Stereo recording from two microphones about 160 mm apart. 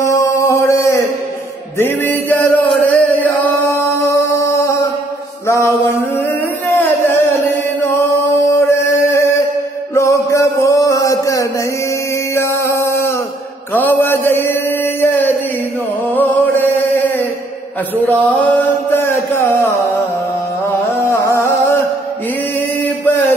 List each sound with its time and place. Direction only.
0.0 s mantra: 20° left (ahead or behind)
1.8 s chant: 10° left (ahead or behind)
3.7 s a sound: 15° left (ahead or behind)
5.5 s mantra: 20° left (ahead or behind)
6.8 s singing: 15° left (ahead or behind)
9.9 s music: 20° left (ahead or behind)
12.4 s a sound: 15° left (ahead or behind)
13.7 s mantra: 10° left (ahead or behind)
16.2 s chant: 15° left (ahead or behind)
18.0 s a sound: 10° left (ahead or behind)
21.1 s music: 15° left (ahead or behind)